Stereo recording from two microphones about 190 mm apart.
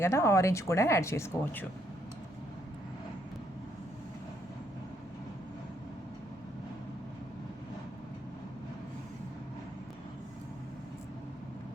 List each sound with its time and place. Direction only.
0.0 s speech: 15° left (ahead or behind)